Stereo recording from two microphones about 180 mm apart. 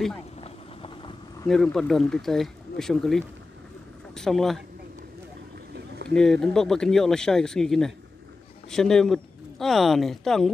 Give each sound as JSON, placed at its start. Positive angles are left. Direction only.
{"t": 0.4, "sound": "clip-clop", "side_deg": 30}
{"t": 1.5, "sound": "speech", "side_deg": 0}
{"t": 6.0, "sound": "speech", "side_deg": 5}